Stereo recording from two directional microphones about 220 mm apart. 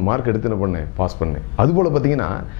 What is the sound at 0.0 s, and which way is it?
A man's voice, 15° left (ahead or behind).